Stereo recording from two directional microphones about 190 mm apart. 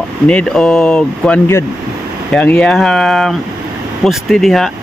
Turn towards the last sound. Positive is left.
turn(degrees=0)  # may be behind; listen again after turning